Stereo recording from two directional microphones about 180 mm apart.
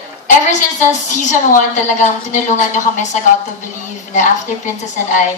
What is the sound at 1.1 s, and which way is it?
A woman's voice, 45° left (ahead or behind).